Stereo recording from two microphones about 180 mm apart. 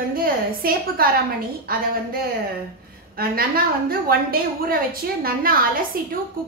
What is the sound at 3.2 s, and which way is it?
A woman's voice, 55° right (ahead or behind).